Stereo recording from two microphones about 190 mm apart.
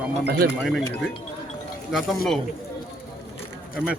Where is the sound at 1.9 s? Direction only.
Centre (ahead or behind).